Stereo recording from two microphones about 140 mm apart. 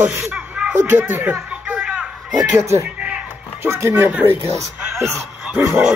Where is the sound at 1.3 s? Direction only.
10° right (ahead or behind).